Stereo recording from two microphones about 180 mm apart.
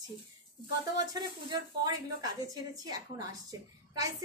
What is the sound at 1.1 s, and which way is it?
A woman's voice, 25° right (ahead or behind).